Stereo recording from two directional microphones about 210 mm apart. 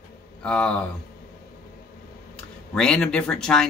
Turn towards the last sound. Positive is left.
turn(degrees=5)  # may be behind; listen again after turning